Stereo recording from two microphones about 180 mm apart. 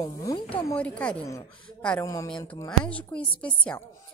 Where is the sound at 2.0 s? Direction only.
20° left (ahead or behind).